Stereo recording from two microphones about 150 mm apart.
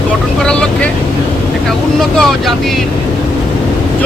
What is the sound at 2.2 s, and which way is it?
Speech, centre (ahead or behind).